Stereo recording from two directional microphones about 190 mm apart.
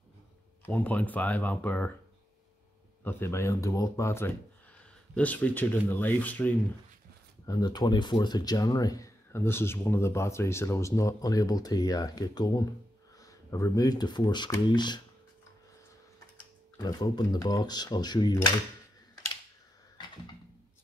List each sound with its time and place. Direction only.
0.7 s speech: 10° left (ahead or behind)
3.0 s speech: 10° left (ahead or behind)
7.4 s speech: 20° left (ahead or behind)
16.7 s speech: 20° left (ahead or behind)